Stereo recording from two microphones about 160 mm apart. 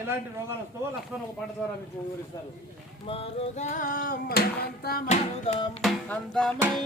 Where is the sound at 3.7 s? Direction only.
55° left (ahead or behind); by 5.0 s 70° left (ahead or behind).